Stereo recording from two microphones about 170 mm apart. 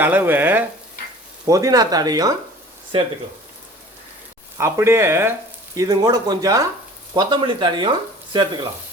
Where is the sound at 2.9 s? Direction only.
30° right (ahead or behind).